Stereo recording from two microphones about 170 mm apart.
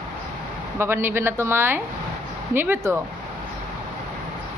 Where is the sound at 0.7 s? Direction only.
15° right (ahead or behind).